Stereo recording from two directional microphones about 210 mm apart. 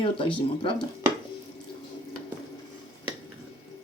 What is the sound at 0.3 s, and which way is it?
Speech, 20° left (ahead or behind).